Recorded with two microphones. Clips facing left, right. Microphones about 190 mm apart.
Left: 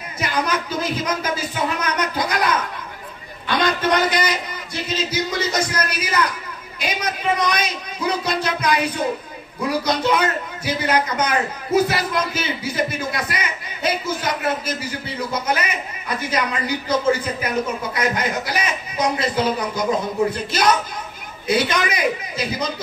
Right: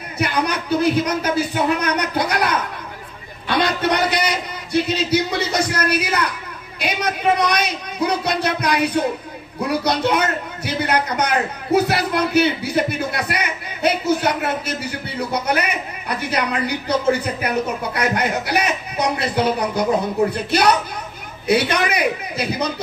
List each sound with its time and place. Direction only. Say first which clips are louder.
0.2 s a man's voice: right 2 dB; 60° right (ahead or behind)